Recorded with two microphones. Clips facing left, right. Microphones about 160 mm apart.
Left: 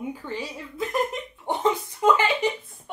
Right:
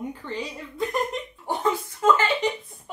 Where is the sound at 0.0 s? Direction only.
5° left (ahead or behind).